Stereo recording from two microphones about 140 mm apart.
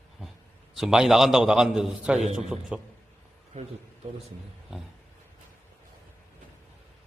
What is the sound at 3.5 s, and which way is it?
Speech, 60° right (ahead or behind).